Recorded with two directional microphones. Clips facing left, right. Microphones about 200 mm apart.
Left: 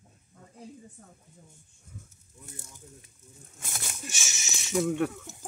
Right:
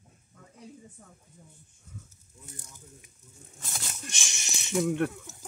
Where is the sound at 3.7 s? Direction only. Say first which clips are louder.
Left 1 dB; 5° left (ahead or behind).